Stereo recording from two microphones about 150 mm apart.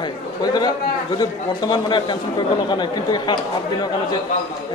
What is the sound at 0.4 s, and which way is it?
A man's voice, 25° left (ahead or behind).